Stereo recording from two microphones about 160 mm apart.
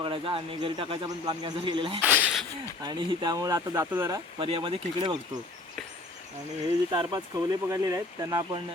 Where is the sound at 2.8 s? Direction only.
30° right (ahead or behind).